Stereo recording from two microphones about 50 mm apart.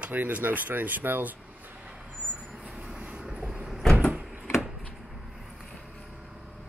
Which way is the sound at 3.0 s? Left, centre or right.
Right.